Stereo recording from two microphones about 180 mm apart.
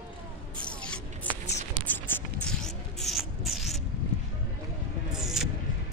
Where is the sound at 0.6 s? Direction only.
5° left (ahead or behind).